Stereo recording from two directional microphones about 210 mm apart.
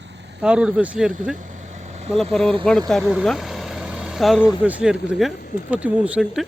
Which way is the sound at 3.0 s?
5° right (ahead or behind).